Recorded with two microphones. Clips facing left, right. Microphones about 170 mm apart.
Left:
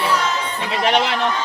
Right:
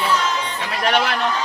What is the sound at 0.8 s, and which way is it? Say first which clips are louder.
Speech: left 1 dB; 20° left (ahead or behind).